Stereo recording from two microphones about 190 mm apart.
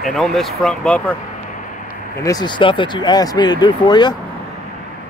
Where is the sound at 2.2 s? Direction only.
20° left (ahead or behind).